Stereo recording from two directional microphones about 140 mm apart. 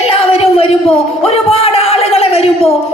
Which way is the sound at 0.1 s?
45° left (ahead or behind).